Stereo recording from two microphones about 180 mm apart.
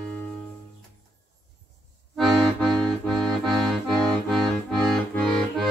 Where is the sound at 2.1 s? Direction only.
Centre (ahead or behind).